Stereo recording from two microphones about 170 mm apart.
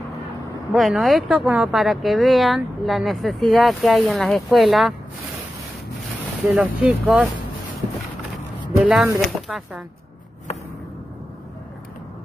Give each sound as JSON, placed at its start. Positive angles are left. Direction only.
{"t": 0.7, "sound": "speech", "side_deg": 0}
{"t": 6.4, "sound": "speech", "side_deg": -5}
{"t": 8.7, "sound": "a sound", "side_deg": -5}
{"t": 9.5, "sound": "speech", "side_deg": -5}